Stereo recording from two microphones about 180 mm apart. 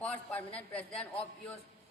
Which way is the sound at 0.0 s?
5° left (ahead or behind).